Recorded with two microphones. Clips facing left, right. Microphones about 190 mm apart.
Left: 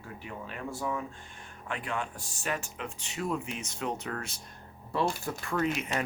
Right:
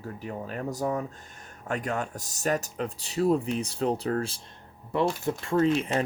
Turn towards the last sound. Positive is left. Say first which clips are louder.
# right 7 dB
turn(degrees=-30)  # may be behind; listen again after turning